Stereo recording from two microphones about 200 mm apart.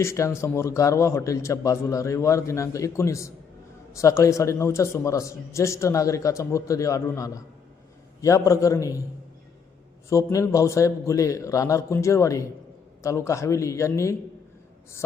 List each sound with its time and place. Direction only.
0.0 s a man's voice: 15° left (ahead or behind)
10.1 s a man's voice: 15° left (ahead or behind)